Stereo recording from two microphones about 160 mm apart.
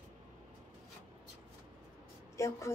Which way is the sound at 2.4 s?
20° left (ahead or behind).